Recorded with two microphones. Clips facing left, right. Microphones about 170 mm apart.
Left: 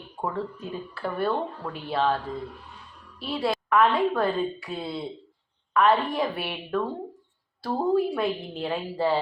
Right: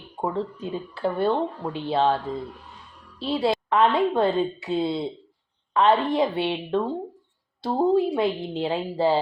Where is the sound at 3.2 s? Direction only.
25° right (ahead or behind).